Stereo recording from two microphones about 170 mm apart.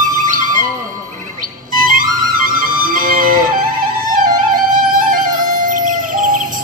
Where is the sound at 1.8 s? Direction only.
55° right (ahead or behind).